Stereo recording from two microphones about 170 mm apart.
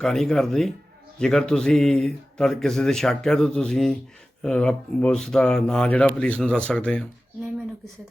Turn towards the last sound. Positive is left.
turn(degrees=5)  # may be behind; listen again after turning